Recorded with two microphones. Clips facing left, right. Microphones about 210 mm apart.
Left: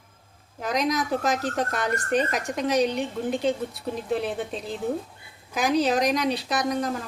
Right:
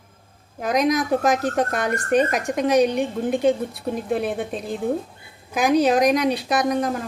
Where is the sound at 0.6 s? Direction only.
50° right (ahead or behind).